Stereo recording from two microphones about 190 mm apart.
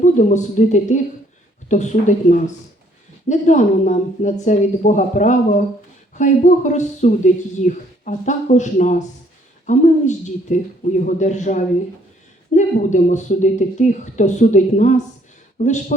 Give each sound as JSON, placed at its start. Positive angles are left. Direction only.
{"t": 0.0, "sound": "speech", "side_deg": 40}